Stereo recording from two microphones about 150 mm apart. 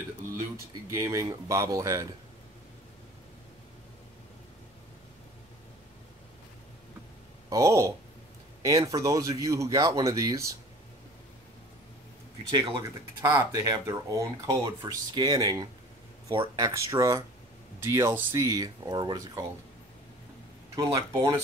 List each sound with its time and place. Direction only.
0.8 s speech: 20° right (ahead or behind)
7.4 s speech: 20° right (ahead or behind)
12.4 s speech: 30° right (ahead or behind)
13.2 s speech: 15° right (ahead or behind)
20.7 s speech: 20° right (ahead or behind)